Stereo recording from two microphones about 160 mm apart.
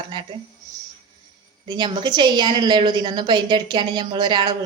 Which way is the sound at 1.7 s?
30° right (ahead or behind).